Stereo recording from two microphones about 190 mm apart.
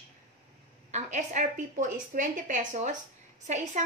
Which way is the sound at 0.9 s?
35° right (ahead or behind).